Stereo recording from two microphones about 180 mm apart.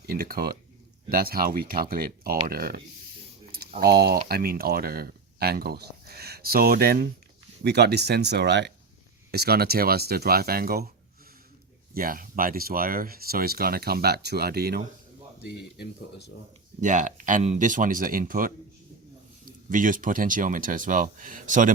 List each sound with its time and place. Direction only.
0.0 s speech: 55° right (ahead or behind)
11.9 s speech: 50° right (ahead or behind)
15.4 s speech: 70° left (ahead or behind)
16.8 s speech: 45° right (ahead or behind)